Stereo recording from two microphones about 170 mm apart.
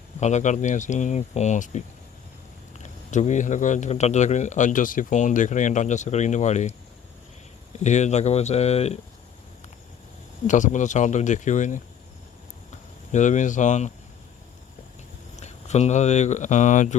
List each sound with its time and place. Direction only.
0.2 s speech: 45° left (ahead or behind)
3.1 s speech: 45° left (ahead or behind)
7.9 s speech: 45° left (ahead or behind)
10.4 s speech: 45° left (ahead or behind)
13.1 s speech: 45° left (ahead or behind)
15.4 s speech: 40° left (ahead or behind)